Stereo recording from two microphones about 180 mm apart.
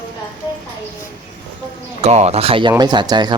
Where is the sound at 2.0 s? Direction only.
35° right (ahead or behind).